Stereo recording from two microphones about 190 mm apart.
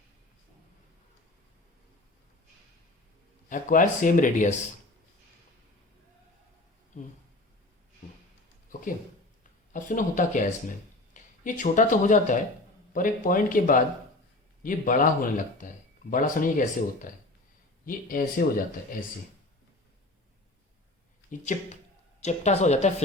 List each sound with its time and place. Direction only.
3.5 s speech: 45° left (ahead or behind)
9.4 s speech: 45° left (ahead or behind)
21.2 s speech: 40° left (ahead or behind)